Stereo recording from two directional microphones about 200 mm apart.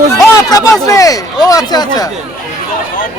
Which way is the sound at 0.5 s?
15° left (ahead or behind).